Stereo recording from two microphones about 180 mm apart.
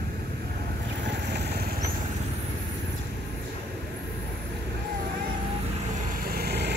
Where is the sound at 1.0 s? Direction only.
70° right (ahead or behind).